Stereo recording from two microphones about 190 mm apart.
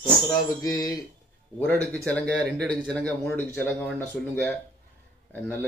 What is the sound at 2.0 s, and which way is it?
Speech, 5° left (ahead or behind).